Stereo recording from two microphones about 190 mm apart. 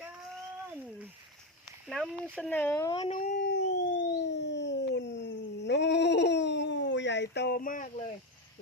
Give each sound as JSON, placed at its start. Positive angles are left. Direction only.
{"t": 2.3, "sound": "speech", "side_deg": 5}
{"t": 2.9, "sound": "speech", "side_deg": 30}
{"t": 3.3, "sound": "a sound", "side_deg": 60}